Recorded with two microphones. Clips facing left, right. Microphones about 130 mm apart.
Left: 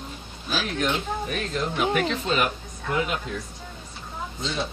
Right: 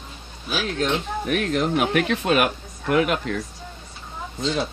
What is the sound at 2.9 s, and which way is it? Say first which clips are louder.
Speech: right 6 dB; 75° right (ahead or behind).